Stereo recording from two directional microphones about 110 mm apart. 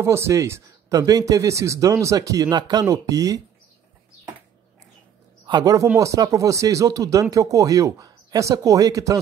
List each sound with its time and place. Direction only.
0.0 s speech: 25° right (ahead or behind)
5.5 s speech: 35° right (ahead or behind)